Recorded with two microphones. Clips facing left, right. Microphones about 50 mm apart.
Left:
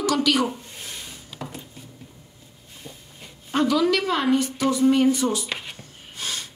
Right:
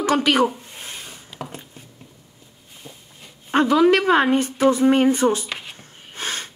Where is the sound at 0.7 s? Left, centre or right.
Right.